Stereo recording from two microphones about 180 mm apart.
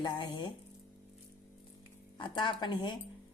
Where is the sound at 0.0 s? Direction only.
25° left (ahead or behind).